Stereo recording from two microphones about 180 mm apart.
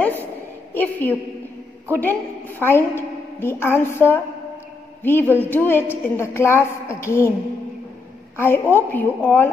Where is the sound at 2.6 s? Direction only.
10° left (ahead or behind).